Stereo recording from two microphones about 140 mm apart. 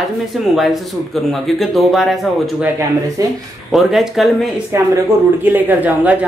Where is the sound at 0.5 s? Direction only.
Centre (ahead or behind).